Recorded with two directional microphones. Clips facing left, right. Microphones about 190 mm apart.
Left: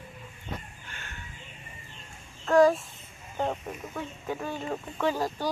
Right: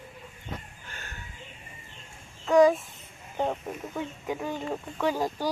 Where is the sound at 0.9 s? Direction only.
40° right (ahead or behind).